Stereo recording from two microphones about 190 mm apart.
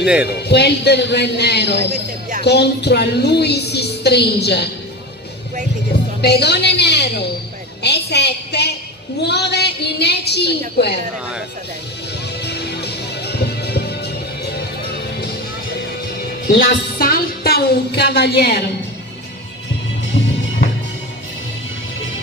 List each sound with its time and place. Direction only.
0.0 s speech: 5° right (ahead or behind)
0.3 s a woman's voice: 60° left (ahead or behind)
6.2 s a woman's voice: 60° left (ahead or behind)
12.4 s music: 60° left (ahead or behind)
16.4 s a woman's voice: 50° left (ahead or behind)